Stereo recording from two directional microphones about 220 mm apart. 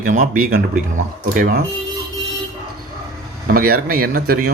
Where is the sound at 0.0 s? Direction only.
35° right (ahead or behind).